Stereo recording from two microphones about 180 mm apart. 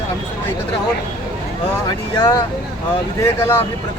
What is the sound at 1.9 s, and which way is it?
Speech, 20° left (ahead or behind).